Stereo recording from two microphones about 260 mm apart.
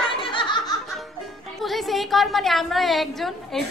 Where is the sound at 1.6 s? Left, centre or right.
Centre.